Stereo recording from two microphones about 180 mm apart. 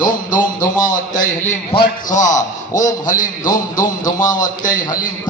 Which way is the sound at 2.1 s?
45° left (ahead or behind).